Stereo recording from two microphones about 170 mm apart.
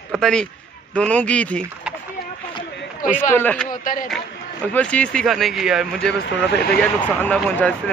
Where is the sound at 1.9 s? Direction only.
5° right (ahead or behind).